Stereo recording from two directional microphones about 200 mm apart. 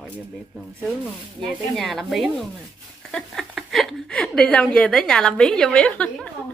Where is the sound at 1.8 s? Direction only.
Centre (ahead or behind).